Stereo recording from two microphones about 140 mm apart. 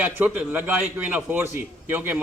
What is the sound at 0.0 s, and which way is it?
A man's voice, 10° right (ahead or behind).